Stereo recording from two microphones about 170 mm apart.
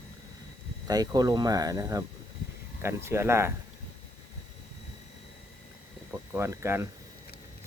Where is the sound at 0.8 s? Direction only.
20° right (ahead or behind).